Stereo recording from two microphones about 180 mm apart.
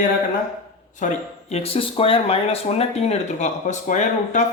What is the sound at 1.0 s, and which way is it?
Speech, 40° left (ahead or behind).